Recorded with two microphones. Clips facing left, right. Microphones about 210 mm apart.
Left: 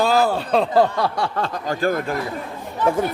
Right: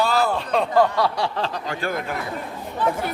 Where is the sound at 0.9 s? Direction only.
50° left (ahead or behind).